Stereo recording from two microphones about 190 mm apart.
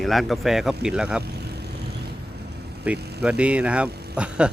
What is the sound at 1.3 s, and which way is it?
Vehicle, 60° right (ahead or behind).